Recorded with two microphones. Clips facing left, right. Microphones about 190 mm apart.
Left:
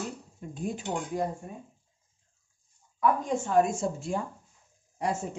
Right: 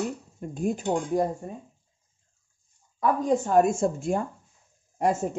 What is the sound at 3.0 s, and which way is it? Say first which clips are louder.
Speech: right 3 dB; 35° right (ahead or behind).